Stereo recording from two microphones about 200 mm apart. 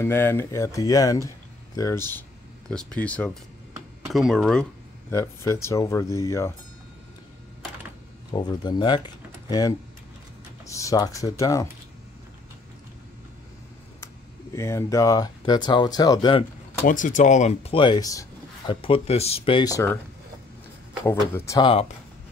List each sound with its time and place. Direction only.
0.0 s speech: 10° left (ahead or behind)
5.1 s speech: 15° left (ahead or behind)
8.3 s speech: 20° left (ahead or behind)
14.0 s speech: 15° left (ahead or behind)
16.8 s speech: 40° left (ahead or behind); by 20.0 s 15° left (ahead or behind)
21.0 s speech: 10° left (ahead or behind)
21.6 s speech: 30° left (ahead or behind)